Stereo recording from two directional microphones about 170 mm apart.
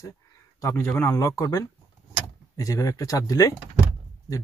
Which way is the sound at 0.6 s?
15° left (ahead or behind).